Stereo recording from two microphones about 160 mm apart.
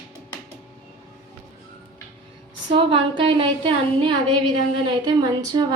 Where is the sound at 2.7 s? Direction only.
35° right (ahead or behind).